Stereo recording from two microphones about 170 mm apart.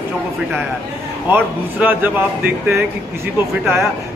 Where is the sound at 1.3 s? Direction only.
10° right (ahead or behind).